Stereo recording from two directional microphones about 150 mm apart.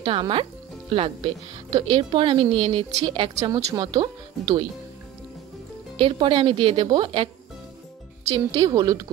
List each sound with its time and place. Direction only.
0.0 s speech: 35° right (ahead or behind)
5.9 s speech: 35° right (ahead or behind)
8.5 s a woman's voice: 30° right (ahead or behind)